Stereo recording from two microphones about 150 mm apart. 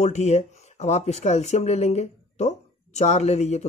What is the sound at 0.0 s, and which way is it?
Speech, 50° left (ahead or behind).